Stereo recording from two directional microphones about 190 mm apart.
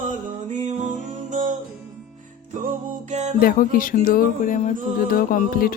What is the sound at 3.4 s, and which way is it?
Music, 45° left (ahead or behind).